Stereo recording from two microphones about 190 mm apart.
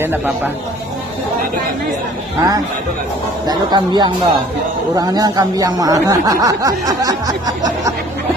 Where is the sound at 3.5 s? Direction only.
25° right (ahead or behind).